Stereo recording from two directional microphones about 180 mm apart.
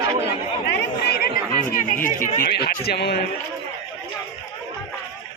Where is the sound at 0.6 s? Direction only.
60° left (ahead or behind).